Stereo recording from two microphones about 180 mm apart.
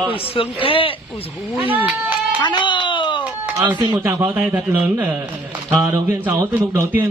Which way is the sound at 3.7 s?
20° right (ahead or behind).